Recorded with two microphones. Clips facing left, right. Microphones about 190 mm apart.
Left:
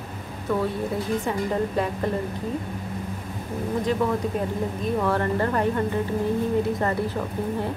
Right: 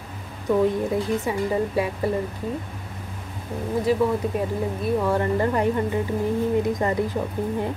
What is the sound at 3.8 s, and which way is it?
A woman's voice, 10° right (ahead or behind).